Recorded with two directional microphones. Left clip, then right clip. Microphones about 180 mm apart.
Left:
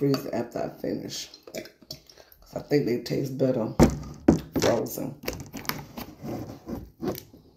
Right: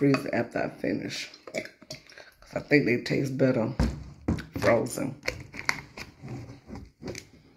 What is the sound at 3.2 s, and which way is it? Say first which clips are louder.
Speech: even; 20° right (ahead or behind).